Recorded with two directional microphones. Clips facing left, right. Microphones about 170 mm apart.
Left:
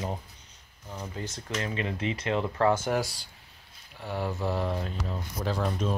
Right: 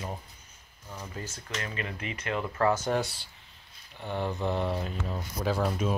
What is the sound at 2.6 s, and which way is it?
Speech, 10° left (ahead or behind).